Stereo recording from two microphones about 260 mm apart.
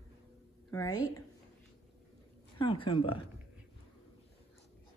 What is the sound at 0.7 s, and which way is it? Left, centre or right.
Speech, centre.